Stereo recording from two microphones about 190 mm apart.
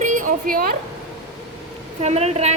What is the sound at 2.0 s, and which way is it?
Speech, 35° right (ahead or behind).